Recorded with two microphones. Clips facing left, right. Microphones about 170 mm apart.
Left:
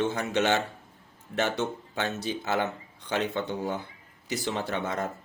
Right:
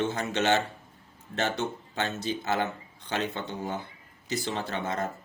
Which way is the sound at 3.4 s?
15° right (ahead or behind).